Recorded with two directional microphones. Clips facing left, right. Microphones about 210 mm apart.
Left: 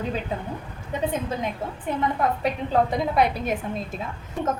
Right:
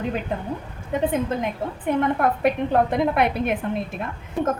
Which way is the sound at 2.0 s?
55° right (ahead or behind).